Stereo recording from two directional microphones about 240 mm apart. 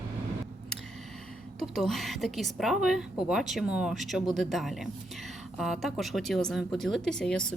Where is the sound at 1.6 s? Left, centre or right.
Centre.